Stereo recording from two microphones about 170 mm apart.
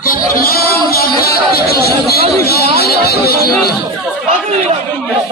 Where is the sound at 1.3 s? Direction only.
65° left (ahead or behind).